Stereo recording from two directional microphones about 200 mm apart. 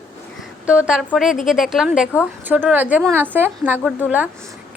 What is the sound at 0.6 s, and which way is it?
A woman's voice, 5° right (ahead or behind).